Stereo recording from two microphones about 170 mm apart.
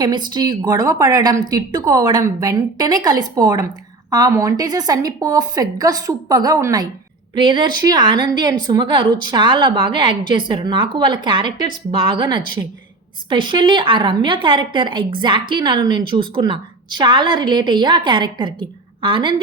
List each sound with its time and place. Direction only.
0.0 s a woman's voice: 25° right (ahead or behind)